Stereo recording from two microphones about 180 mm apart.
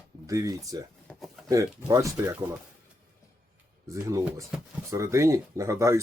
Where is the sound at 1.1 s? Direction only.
5° left (ahead or behind).